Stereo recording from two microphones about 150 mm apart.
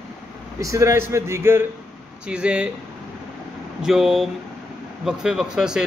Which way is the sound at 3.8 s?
Centre (ahead or behind).